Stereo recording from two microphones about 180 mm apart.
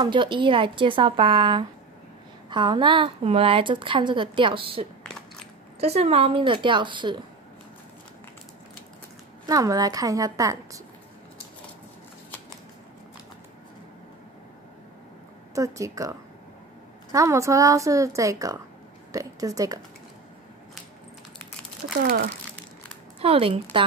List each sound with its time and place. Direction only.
0.0 s a woman's voice: 25° right (ahead or behind)
9.5 s a woman's voice: 20° right (ahead or behind)
15.5 s a woman's voice: 20° right (ahead or behind)
22.0 s speech: 55° right (ahead or behind)
23.2 s a woman's voice: 30° right (ahead or behind)